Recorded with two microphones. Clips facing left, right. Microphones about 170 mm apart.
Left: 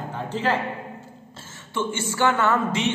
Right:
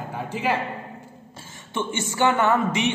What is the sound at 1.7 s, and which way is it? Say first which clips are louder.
A woman's voice: even; 20° right (ahead or behind).